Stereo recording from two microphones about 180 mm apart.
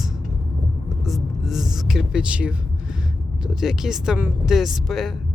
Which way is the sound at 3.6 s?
Centre (ahead or behind).